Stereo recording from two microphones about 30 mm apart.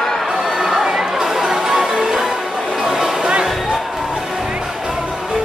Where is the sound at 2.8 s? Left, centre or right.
Right.